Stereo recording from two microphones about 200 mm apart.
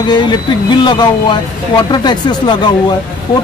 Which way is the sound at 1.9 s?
20° left (ahead or behind).